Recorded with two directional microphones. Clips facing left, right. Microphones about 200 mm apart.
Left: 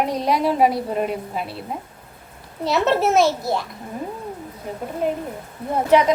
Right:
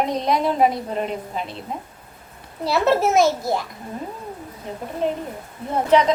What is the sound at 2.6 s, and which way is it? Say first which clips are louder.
Speech: even; 5° right (ahead or behind).